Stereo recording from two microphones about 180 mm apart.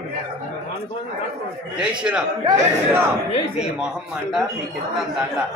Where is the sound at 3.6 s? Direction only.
5° right (ahead or behind).